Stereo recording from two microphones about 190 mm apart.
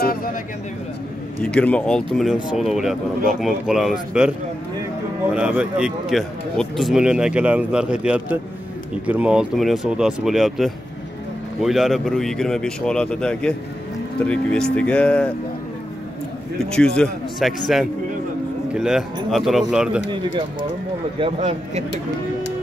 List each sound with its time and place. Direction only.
0.0 s speech: 50° left (ahead or behind)
1.4 s speech: 5° left (ahead or behind)
5.3 s speech: 5° right (ahead or behind)
16.7 s speech: 5° left (ahead or behind)
21.2 s a man's voice: 35° right (ahead or behind)